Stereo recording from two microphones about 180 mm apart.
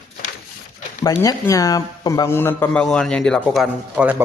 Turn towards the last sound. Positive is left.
turn(degrees=-10)  # may be behind; listen again after turning